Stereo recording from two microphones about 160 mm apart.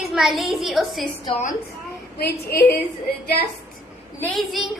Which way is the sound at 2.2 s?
75° left (ahead or behind).